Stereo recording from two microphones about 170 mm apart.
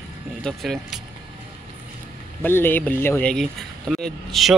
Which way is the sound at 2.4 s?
10° left (ahead or behind).